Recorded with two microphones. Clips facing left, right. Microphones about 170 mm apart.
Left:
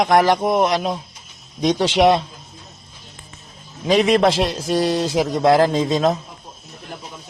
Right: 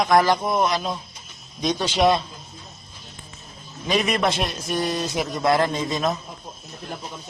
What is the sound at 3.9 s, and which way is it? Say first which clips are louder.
A man's voice: left 7 dB; 90° left.